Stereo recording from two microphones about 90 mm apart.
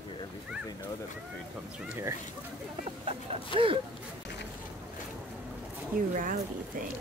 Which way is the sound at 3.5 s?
80° right.